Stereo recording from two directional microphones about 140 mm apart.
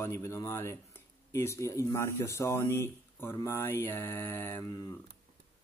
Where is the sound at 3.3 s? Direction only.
20° left (ahead or behind).